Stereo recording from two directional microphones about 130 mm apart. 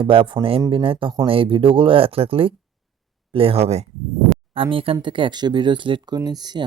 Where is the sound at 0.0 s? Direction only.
45° right (ahead or behind).